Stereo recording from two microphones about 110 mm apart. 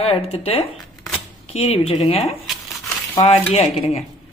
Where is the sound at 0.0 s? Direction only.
55° left (ahead or behind).